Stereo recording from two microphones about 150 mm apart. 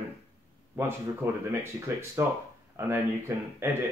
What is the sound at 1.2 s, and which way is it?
Speech, 20° right (ahead or behind).